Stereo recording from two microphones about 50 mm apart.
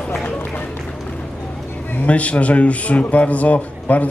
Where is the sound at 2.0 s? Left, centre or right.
Left.